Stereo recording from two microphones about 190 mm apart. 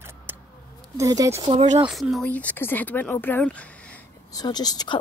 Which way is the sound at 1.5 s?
30° right (ahead or behind).